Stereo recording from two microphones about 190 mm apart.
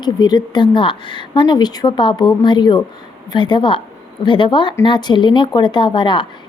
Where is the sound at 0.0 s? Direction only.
20° left (ahead or behind).